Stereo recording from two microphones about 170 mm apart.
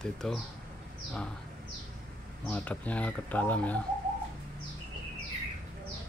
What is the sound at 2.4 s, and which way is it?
Speech, 10° left (ahead or behind).